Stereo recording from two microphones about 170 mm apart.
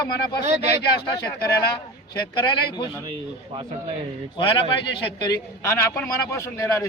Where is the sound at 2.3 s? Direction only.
25° left (ahead or behind).